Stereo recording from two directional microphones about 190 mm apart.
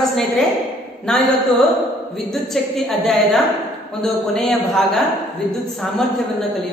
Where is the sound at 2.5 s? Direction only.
Centre (ahead or behind).